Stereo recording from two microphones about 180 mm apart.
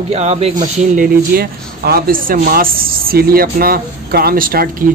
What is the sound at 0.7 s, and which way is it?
Speech, 55° right (ahead or behind).